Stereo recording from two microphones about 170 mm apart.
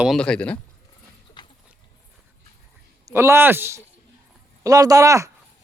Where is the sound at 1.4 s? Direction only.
25° left (ahead or behind).